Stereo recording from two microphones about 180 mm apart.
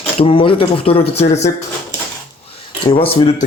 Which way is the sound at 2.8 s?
30° left (ahead or behind).